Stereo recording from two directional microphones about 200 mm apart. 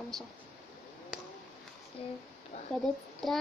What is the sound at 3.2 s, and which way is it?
Speech, centre (ahead or behind).